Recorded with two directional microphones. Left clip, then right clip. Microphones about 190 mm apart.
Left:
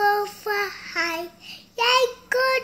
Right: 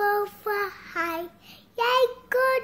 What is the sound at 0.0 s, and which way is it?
Child singing, 15° right (ahead or behind).